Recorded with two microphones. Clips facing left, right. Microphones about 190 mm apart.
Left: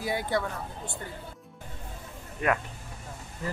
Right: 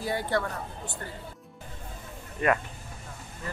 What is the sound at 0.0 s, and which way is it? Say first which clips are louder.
Speech: even; 15° left (ahead or behind).